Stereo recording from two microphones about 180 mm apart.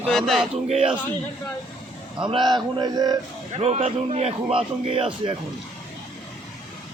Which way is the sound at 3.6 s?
35° right (ahead or behind).